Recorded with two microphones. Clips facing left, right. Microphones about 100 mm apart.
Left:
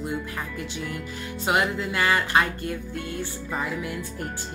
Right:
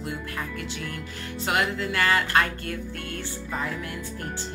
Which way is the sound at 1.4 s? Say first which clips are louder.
Left 2 dB; 15° left (ahead or behind).